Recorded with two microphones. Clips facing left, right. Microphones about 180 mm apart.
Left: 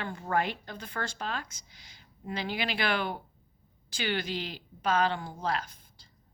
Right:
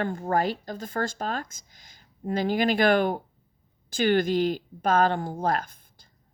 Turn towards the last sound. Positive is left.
turn(degrees=-50)  # may be behind; listen again after turning